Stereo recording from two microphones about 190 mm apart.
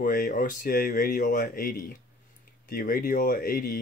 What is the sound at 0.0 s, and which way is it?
Speech, 45° left (ahead or behind).